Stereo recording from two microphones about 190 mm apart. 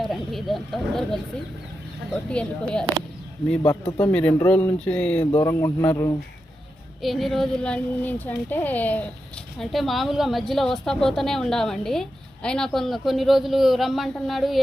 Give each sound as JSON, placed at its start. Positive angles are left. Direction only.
{"t": 0.0, "sound": "a woman's voice", "side_deg": 0}
{"t": 3.8, "sound": "speech", "side_deg": 25}
{"t": 4.1, "sound": "speech", "side_deg": 10}
{"t": 7.0, "sound": "a woman's voice", "side_deg": 0}